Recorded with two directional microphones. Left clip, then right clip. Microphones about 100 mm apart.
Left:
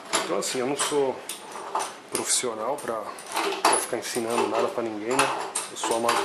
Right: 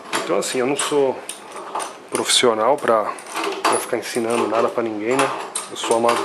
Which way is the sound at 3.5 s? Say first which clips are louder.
Right 4 dB; centre (ahead or behind).